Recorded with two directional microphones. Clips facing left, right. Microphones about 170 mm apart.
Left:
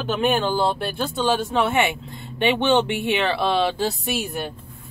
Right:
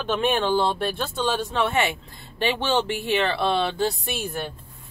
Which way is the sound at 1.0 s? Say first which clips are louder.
Left 3 dB; 10° left (ahead or behind).